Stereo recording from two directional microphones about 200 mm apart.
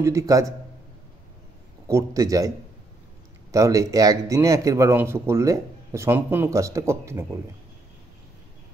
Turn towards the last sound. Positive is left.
turn(degrees=-15)  # may be behind; listen again after turning